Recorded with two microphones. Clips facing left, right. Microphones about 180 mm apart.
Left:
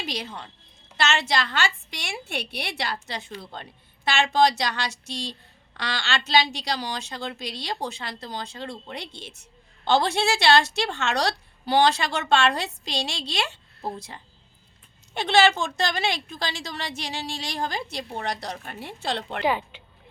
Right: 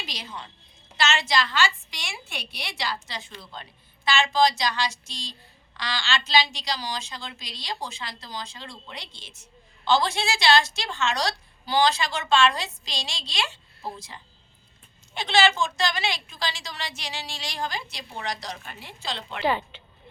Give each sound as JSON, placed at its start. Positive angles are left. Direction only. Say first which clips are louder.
{"t": 0.0, "sound": "a woman's voice", "louder": "left 5 dB", "side_deg": 60}
{"t": 19.4, "sound": "speech", "louder": "right 2 dB", "side_deg": 10}